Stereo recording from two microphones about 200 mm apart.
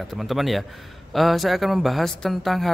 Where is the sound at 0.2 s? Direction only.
Centre (ahead or behind).